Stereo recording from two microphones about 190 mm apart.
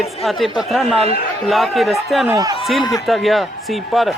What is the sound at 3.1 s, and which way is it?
A man's voice, centre (ahead or behind).